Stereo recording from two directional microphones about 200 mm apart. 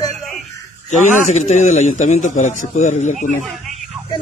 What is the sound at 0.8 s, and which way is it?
A man's voice, 35° left (ahead or behind).